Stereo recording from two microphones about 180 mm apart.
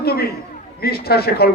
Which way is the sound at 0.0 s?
60° left (ahead or behind).